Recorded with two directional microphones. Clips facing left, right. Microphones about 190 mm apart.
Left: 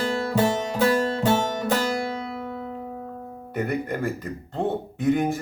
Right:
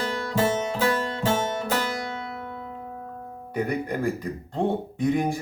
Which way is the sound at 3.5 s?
Centre (ahead or behind).